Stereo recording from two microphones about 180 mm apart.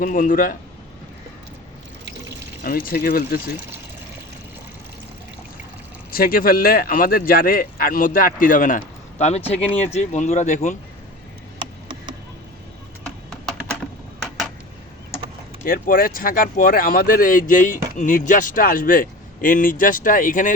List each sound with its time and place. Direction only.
0.0 s speech: 50° left (ahead or behind)
2.6 s speech: 50° left (ahead or behind)
6.1 s speech: 55° left (ahead or behind)
15.6 s speech: 50° left (ahead or behind)